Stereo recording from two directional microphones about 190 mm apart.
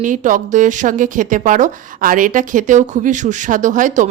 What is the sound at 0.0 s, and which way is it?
A woman's voice, 40° right (ahead or behind).